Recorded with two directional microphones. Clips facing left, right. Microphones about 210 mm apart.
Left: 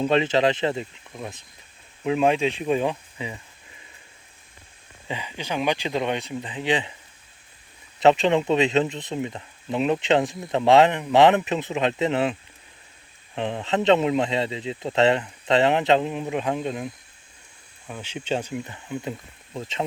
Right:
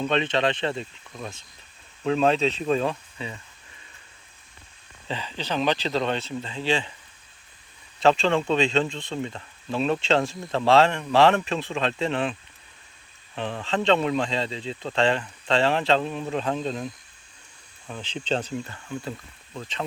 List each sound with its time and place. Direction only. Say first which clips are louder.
0.0 s speech: left 4 dB; 25° left (ahead or behind)
5.0 s speech: even; 15° left (ahead or behind)
7.9 s speech: left 3 dB; 20° left (ahead or behind)